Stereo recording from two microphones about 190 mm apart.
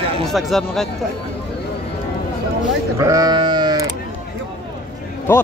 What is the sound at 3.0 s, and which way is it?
Speech, 20° right (ahead or behind).